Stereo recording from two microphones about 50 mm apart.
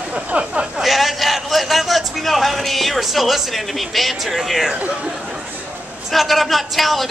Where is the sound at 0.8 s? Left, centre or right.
Centre.